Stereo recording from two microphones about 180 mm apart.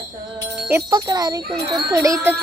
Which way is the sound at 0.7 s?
15° right (ahead or behind).